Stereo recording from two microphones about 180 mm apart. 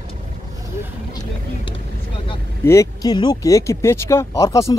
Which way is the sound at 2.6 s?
15° left (ahead or behind).